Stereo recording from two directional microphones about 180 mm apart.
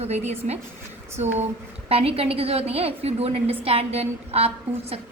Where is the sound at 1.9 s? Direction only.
35° right (ahead or behind).